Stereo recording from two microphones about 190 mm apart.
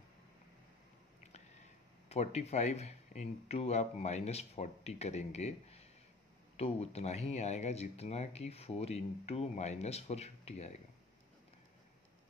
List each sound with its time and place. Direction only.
1.3 s speech: 35° left (ahead or behind)